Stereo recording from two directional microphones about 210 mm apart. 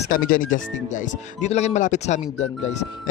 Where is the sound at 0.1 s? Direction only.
40° left (ahead or behind).